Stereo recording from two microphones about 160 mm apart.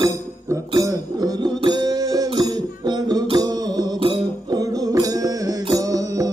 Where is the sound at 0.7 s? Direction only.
25° right (ahead or behind).